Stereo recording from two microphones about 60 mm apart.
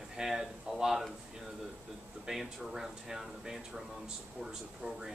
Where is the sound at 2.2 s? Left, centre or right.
Centre.